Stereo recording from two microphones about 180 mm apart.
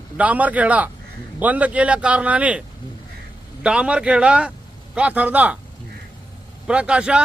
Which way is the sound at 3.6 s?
5° right (ahead or behind).